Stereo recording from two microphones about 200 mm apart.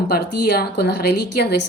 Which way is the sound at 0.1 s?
50° left (ahead or behind).